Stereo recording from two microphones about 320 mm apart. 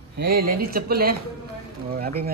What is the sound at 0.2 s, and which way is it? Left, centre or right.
Speech, right.